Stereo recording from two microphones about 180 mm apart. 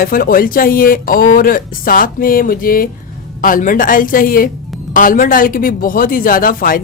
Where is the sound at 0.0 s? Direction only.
55° left (ahead or behind).